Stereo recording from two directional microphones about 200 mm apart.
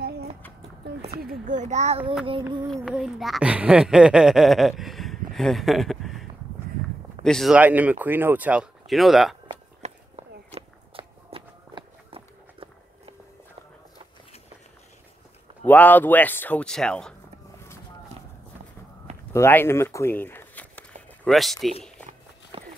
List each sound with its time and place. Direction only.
1.2 s a child's voice: 40° right (ahead or behind)
2.7 s speech: centre (ahead or behind)
7.2 s speech: centre (ahead or behind)
9.8 s walk: 30° right (ahead or behind)
15.6 s speech: 10° left (ahead or behind)
19.3 s speech: 10° left (ahead or behind)
22.5 s run: 25° right (ahead or behind)